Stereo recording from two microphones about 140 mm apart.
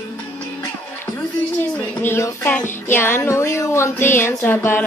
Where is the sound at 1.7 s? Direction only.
15° left (ahead or behind).